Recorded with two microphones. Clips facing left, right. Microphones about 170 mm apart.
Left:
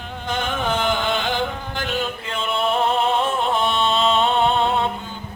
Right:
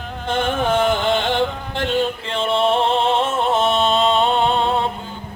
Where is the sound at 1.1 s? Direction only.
30° right (ahead or behind).